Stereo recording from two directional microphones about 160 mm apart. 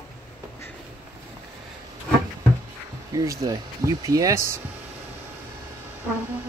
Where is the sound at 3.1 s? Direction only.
20° right (ahead or behind).